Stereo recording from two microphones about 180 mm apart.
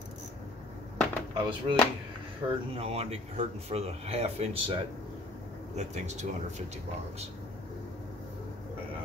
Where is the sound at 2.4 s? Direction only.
20° right (ahead or behind).